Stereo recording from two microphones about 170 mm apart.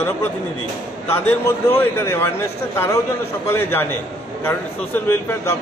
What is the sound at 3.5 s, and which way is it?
Speech, 15° left (ahead or behind).